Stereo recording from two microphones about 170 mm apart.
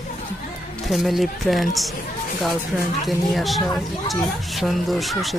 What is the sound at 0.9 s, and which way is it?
Speech, centre (ahead or behind).